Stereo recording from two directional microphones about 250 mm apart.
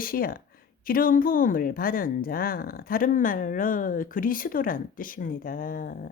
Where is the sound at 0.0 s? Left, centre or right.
Left.